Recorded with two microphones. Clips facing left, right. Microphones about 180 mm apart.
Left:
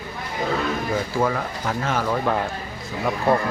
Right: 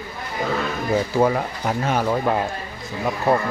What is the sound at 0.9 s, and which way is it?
Speech, 25° right (ahead or behind).